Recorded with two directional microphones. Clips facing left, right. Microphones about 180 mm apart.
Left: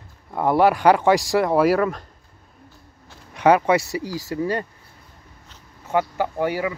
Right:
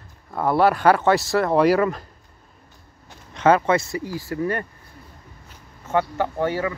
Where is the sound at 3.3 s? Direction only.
15° left (ahead or behind).